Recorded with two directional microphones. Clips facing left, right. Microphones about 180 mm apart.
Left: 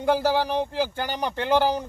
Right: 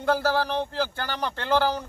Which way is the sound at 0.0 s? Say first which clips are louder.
Left 2 dB; 15° left (ahead or behind).